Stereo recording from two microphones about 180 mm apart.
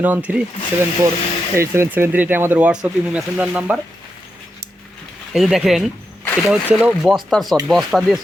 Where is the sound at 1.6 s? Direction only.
15° right (ahead or behind).